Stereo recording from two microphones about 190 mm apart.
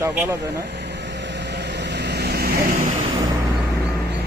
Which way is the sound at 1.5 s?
65° right (ahead or behind).